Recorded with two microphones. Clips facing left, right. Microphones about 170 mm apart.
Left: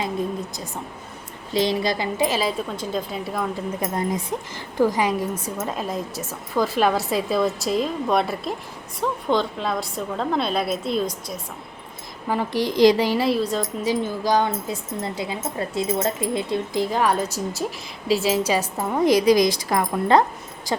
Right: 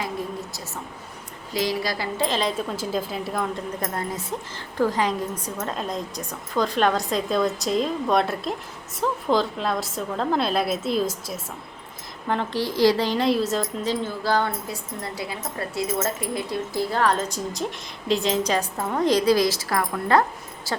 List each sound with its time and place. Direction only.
1.5 s a woman's voice: 25° left (ahead or behind); by 11.3 s 5° right (ahead or behind)
12.3 s a woman's voice: 10° left (ahead or behind)
13.8 s a woman's voice: 15° left (ahead or behind)